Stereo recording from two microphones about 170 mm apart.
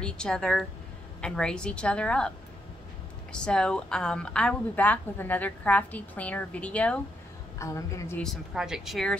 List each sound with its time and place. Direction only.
0.0 s a woman's voice: 5° left (ahead or behind)
7.5 s a woman's voice: 20° left (ahead or behind)
8.2 s a woman's voice: centre (ahead or behind)